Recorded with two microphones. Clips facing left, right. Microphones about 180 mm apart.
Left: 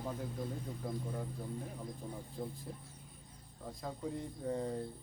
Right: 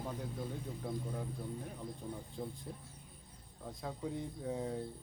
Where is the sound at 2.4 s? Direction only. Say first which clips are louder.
Left 1 dB; 5° right (ahead or behind).